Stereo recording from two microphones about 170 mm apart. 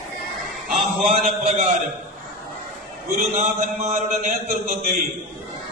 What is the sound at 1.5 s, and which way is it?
Speech, 40° right (ahead or behind).